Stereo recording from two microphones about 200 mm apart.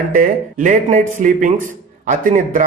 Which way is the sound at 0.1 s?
40° right (ahead or behind).